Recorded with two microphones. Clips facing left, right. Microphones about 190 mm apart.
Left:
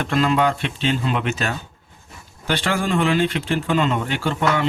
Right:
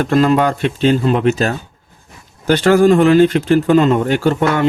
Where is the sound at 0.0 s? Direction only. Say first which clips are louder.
Right 6 dB; 45° right (ahead or behind).